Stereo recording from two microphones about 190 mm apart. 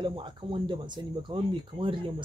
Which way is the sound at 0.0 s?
25° right (ahead or behind).